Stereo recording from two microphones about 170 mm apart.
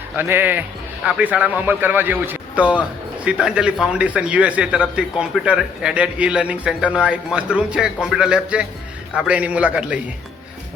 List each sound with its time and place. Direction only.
0.2 s a man's voice: 10° right (ahead or behind)